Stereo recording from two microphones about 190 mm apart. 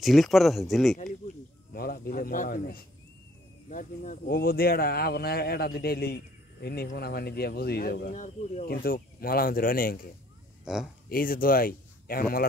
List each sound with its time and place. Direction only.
0.0 s speech: centre (ahead or behind)
0.9 s speech: 40° left (ahead or behind)
10.6 s speech: 5° right (ahead or behind)
11.1 s speech: 50° left (ahead or behind)